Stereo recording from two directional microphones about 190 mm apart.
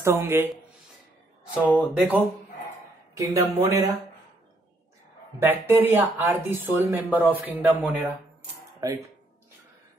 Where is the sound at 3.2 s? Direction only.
15° right (ahead or behind).